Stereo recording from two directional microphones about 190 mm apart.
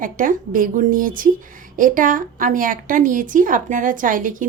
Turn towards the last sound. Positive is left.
turn(degrees=-45)  # may be behind; listen again after turning